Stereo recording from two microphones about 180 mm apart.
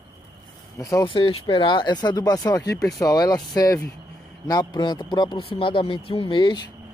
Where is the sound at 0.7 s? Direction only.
20° left (ahead or behind).